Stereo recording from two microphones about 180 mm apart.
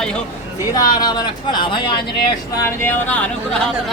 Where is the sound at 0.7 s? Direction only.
20° left (ahead or behind).